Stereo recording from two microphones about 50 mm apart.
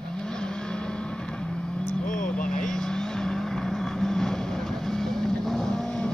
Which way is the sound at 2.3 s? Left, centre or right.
Centre.